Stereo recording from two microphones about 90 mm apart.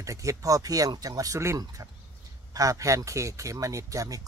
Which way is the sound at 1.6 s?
50° right (ahead or behind).